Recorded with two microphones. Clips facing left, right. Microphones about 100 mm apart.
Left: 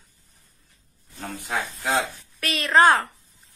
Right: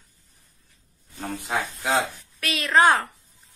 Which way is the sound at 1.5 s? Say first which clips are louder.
Right 1 dB; 20° right (ahead or behind).